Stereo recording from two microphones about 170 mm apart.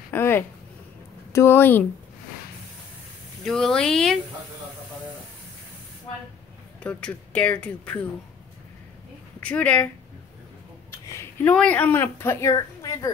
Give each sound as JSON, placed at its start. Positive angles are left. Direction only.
{"t": 0.1, "sound": "speech", "side_deg": 10}
{"t": 3.4, "sound": "speech", "side_deg": 5}
{"t": 6.8, "sound": "speech", "side_deg": 5}
{"t": 9.4, "sound": "speech", "side_deg": 5}
{"t": 11.1, "sound": "a sound", "side_deg": 15}
{"t": 11.5, "sound": "speech", "side_deg": 5}